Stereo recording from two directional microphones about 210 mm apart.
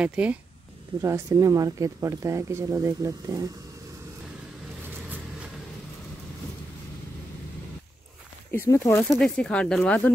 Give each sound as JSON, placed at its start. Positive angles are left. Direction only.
{"t": 0.0, "sound": "speech", "side_deg": -5}
{"t": 8.5, "sound": "speech", "side_deg": 10}